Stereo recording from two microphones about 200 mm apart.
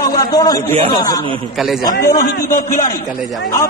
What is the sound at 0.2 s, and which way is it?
A man's voice, 20° left (ahead or behind).